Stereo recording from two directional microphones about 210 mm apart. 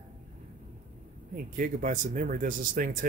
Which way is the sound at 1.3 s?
40° right (ahead or behind).